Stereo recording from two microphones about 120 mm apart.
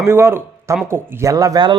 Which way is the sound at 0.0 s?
20° right (ahead or behind).